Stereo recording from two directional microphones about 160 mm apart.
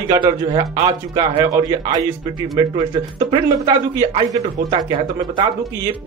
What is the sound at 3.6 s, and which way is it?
A man's voice, 30° right (ahead or behind).